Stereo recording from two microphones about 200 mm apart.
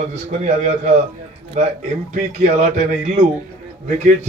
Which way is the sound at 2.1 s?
35° right (ahead or behind).